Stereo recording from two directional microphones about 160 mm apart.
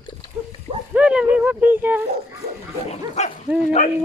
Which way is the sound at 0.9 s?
10° right (ahead or behind).